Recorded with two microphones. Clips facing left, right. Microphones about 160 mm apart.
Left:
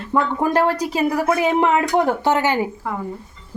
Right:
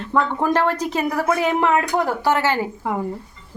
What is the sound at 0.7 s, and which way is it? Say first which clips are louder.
Speech: left 2 dB; 10° left (ahead or behind).